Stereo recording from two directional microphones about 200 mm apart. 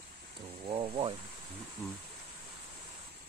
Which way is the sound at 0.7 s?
25° right (ahead or behind).